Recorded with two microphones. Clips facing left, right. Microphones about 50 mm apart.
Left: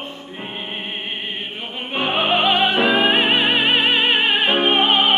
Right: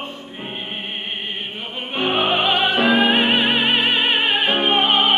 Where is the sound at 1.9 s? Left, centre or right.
Centre.